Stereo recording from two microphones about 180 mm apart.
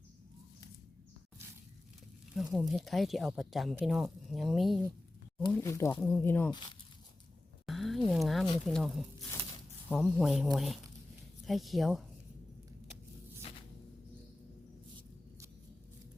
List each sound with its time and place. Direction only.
2.3 s speech: 5° right (ahead or behind)
5.5 s speech: 15° left (ahead or behind)
7.7 s speech: centre (ahead or behind)